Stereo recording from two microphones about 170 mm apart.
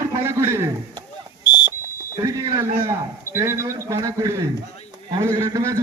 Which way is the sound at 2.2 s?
20° right (ahead or behind).